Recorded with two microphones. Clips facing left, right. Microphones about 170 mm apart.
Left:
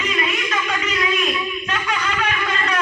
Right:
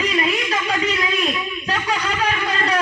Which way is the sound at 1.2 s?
35° right (ahead or behind).